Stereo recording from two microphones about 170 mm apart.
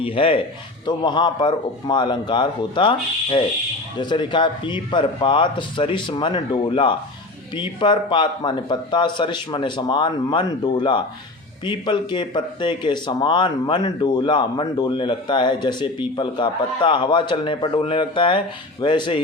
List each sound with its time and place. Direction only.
0.0 s speech: 30° left (ahead or behind)